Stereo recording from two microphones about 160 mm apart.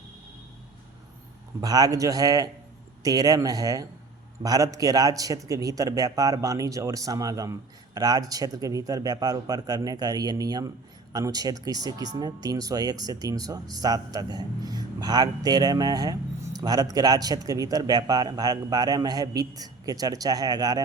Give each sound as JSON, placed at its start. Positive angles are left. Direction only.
{"t": 1.6, "sound": "speech", "side_deg": -25}